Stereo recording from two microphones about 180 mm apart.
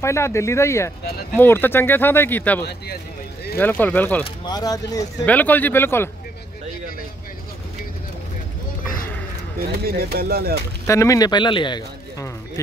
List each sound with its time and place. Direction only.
0.0 s speech: 15° left (ahead or behind)
4.5 s a man's voice: 20° left (ahead or behind)
5.2 s speech: 10° left (ahead or behind)
9.7 s speech: 60° right (ahead or behind)
10.9 s a man's voice: 15° left (ahead or behind)